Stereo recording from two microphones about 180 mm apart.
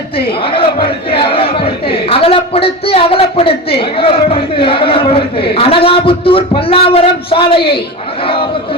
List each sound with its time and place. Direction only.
0.4 s a man's voice: 30° left (ahead or behind)